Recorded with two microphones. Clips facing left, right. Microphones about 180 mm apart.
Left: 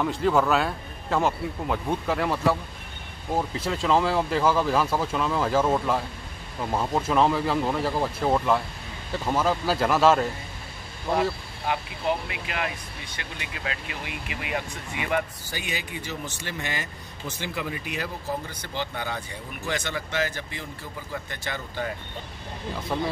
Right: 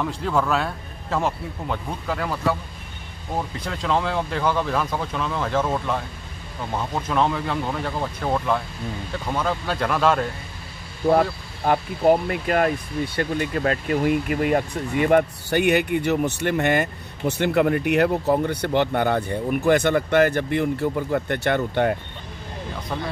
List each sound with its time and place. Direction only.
0.0 s speech: centre (ahead or behind)
3.5 s speech: 5° left (ahead or behind)
11.1 s speech: 50° right (ahead or behind)
22.9 s speech: 5° left (ahead or behind)